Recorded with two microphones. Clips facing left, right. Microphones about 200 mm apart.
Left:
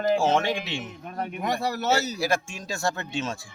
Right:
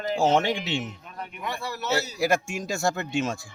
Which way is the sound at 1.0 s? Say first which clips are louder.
Left 6 dB; 45° left (ahead or behind).